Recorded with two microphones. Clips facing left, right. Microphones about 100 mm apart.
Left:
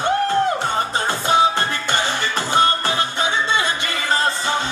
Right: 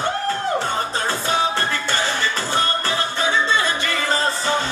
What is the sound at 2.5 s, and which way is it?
Music, 20° left (ahead or behind).